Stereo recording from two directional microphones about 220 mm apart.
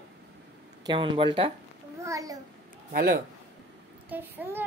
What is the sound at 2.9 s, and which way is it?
Speech, 45° right (ahead or behind).